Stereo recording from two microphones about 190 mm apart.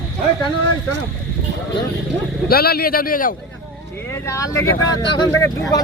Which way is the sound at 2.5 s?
55° left (ahead or behind).